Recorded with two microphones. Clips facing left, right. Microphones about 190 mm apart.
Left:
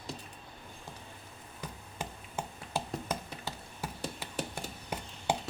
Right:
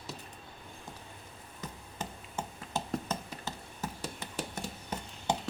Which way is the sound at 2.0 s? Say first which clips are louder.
Even; 10° left (ahead or behind).